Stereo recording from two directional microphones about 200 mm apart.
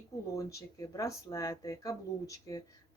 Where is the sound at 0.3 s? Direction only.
15° left (ahead or behind).